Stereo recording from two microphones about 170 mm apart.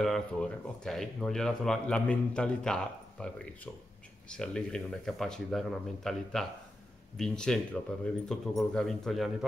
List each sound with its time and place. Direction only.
0.0 s speech: 5° left (ahead or behind)